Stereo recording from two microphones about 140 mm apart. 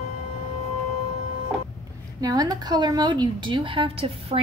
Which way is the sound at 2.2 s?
25° right (ahead or behind).